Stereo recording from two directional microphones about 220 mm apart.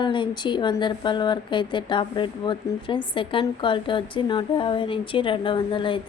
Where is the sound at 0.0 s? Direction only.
20° left (ahead or behind).